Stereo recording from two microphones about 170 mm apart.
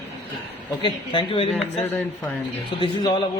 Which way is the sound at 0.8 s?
30° left (ahead or behind).